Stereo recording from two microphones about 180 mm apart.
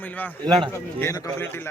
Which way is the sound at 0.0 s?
10° left (ahead or behind).